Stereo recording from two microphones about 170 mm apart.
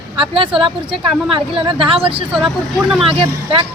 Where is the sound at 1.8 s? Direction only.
35° right (ahead or behind).